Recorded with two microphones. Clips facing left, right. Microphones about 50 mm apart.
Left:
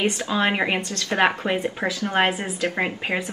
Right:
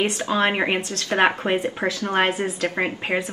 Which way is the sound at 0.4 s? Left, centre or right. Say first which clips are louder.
Right 1 dB; centre.